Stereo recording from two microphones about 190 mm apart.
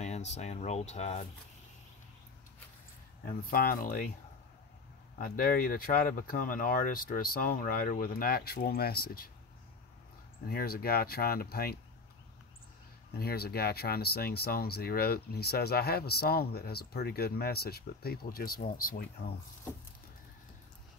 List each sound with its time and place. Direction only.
0.0 s speech: 35° left (ahead or behind)
3.3 s speech: 50° left (ahead or behind)
5.2 s speech: 50° left (ahead or behind)
10.4 s speech: 50° left (ahead or behind)
13.1 s speech: 55° left (ahead or behind)